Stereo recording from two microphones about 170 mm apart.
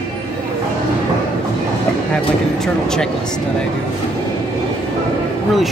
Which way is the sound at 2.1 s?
5° left (ahead or behind).